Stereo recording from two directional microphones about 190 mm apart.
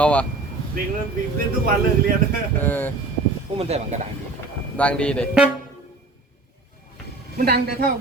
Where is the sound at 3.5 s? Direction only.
35° right (ahead or behind).